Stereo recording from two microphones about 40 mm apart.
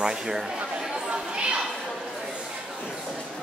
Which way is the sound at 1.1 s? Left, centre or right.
Right.